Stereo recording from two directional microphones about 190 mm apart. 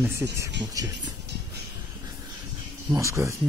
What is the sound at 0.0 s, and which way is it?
Speech, 15° right (ahead or behind).